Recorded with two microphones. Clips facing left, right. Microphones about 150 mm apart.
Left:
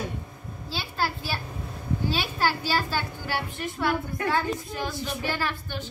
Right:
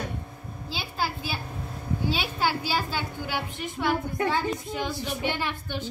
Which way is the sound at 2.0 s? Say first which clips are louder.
Even; 15° right (ahead or behind).